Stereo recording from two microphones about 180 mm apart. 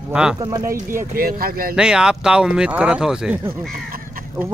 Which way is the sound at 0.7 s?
50° right (ahead or behind).